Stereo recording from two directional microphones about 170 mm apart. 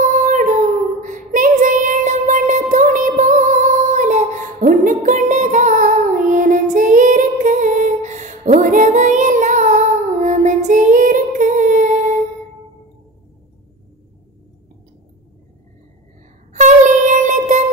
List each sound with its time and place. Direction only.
0.0 s child singing: 45° right (ahead or behind)
16.5 s music: 45° right (ahead or behind)